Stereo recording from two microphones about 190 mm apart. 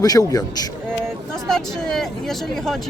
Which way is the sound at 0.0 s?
20° left (ahead or behind).